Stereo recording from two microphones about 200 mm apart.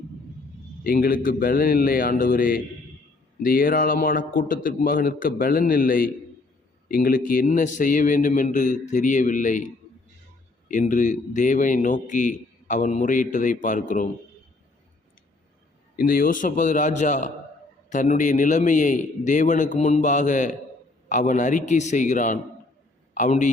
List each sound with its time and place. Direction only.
0.9 s a man's voice: 45° left (ahead or behind)
16.0 s a man's voice: 45° left (ahead or behind)